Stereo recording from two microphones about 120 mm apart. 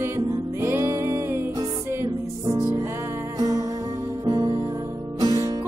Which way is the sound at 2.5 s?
35° right (ahead or behind).